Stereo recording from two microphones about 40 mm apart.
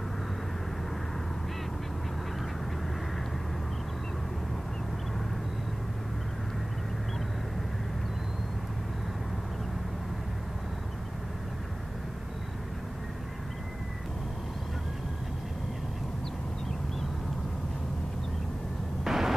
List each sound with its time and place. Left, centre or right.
19.0 s vehicle: centre